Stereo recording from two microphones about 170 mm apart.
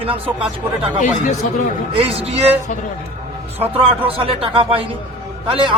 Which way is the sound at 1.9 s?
35° right (ahead or behind).